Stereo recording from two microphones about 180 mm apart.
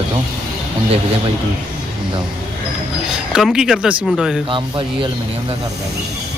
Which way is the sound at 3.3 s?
Centre (ahead or behind).